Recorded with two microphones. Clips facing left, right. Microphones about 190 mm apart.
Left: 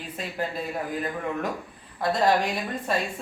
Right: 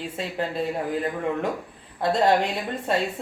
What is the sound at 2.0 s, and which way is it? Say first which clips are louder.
Speech: right 2 dB; 25° right (ahead or behind).